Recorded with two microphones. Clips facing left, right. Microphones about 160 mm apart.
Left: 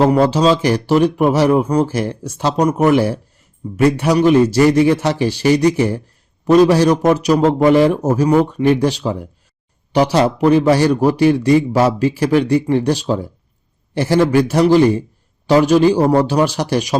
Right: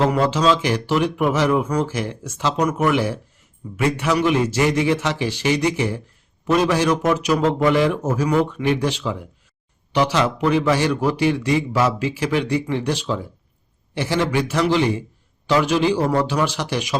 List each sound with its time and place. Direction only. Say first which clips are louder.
0.0 s a man's voice: left 5 dB; 35° left (ahead or behind)